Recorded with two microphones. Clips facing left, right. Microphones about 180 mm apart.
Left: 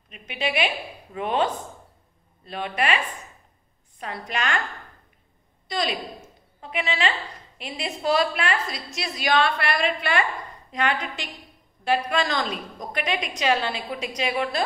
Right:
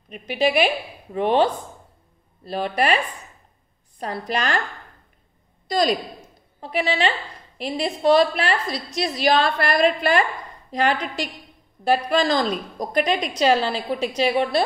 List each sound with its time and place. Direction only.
0.1 s a woman's voice: 40° right (ahead or behind)
4.3 s a woman's voice: 35° right (ahead or behind)
5.7 s a woman's voice: 40° right (ahead or behind)